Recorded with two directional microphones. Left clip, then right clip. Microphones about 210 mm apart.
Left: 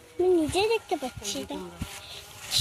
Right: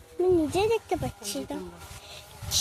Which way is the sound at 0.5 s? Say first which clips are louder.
Even; 5° right (ahead or behind).